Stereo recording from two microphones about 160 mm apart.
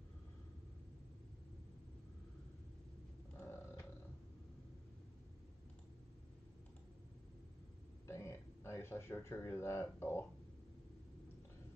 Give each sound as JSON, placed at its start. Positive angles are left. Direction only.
{"t": 3.3, "sound": "roaring cats", "side_deg": 15}
{"t": 8.1, "sound": "speech", "side_deg": 15}